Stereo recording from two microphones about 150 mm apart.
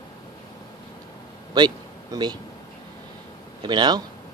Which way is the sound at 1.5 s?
30° right (ahead or behind).